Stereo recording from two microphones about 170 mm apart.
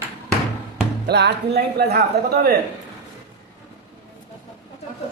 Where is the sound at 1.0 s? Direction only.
80° right.